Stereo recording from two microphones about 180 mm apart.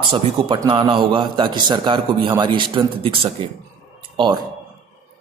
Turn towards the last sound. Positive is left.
turn(degrees=-25)  # may be behind; listen again after turning